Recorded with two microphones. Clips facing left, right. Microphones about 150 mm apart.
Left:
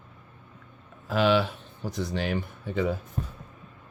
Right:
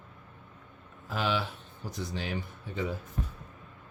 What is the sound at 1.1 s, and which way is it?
Speech, 75° left (ahead or behind).